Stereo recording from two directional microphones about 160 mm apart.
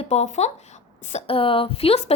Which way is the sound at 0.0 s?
45° left (ahead or behind).